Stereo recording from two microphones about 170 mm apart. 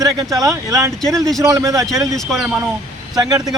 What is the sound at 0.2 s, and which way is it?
Speech, 20° right (ahead or behind).